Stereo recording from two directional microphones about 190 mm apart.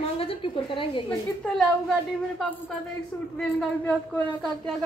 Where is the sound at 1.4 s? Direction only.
5° left (ahead or behind).